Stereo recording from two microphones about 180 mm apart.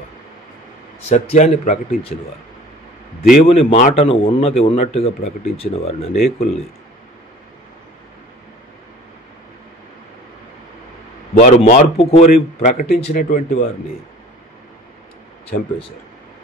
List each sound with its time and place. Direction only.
1.0 s speech: 40° left (ahead or behind)
3.4 s speech: 35° left (ahead or behind)
11.3 s speech: 40° left (ahead or behind)
12.8 s speech: 60° left (ahead or behind)